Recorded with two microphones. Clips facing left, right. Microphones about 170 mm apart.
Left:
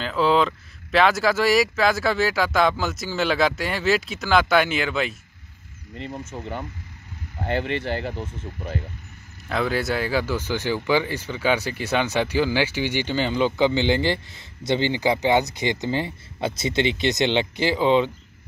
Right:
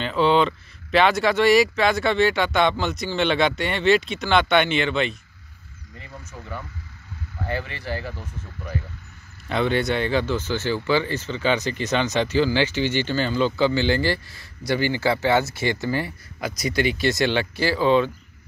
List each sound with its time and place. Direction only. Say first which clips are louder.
0.0 s speech: right 1 dB; centre (ahead or behind)
6.3 s speech: left 1 dB; 25° left (ahead or behind)
7.4 s speech: left 4 dB; 65° left (ahead or behind)
8.1 s speech: left 5 dB; 25° left (ahead or behind)
9.5 s speech: right 2 dB; centre (ahead or behind); by 18.1 s 20° left (ahead or behind)